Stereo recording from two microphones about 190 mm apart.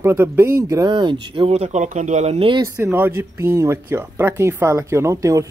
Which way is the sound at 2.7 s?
10° right (ahead or behind).